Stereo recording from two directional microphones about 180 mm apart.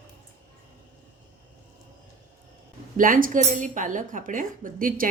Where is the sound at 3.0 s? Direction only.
50° right (ahead or behind).